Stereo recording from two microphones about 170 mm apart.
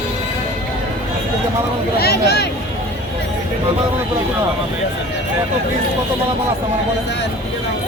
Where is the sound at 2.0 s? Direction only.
70° left (ahead or behind).